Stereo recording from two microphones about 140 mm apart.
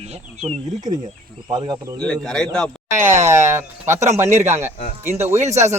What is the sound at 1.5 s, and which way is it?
Speech, 30° right (ahead or behind).